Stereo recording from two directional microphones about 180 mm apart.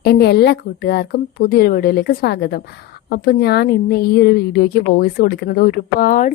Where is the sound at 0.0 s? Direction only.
65° left (ahead or behind).